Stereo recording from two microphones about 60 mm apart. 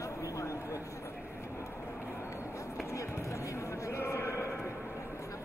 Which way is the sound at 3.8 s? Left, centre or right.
Left.